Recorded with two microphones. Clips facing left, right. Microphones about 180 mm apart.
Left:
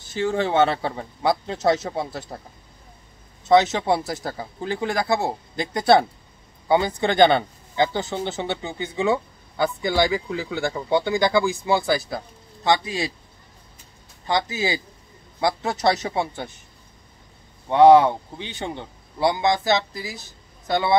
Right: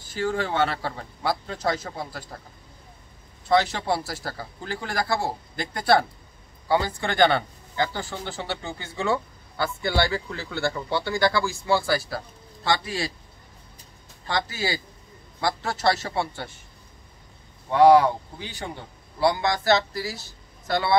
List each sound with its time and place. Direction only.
0.1 s speech: 25° left (ahead or behind)
3.4 s speech: 20° left (ahead or behind)
14.2 s a man's voice: 20° left (ahead or behind)
17.6 s speech: 25° left (ahead or behind)